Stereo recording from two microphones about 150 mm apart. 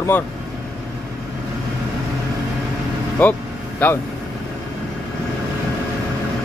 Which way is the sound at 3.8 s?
10° left (ahead or behind).